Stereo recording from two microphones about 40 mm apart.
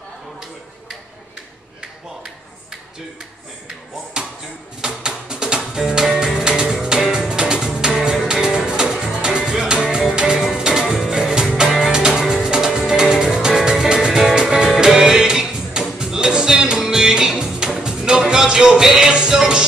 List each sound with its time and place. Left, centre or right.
4.2 s chop: centre
4.8 s music: centre
8.6 s music: right